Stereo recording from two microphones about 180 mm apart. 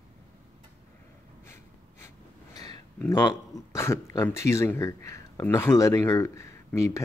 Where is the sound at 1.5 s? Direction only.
15° left (ahead or behind).